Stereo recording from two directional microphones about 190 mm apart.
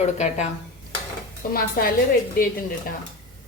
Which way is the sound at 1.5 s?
50° left (ahead or behind).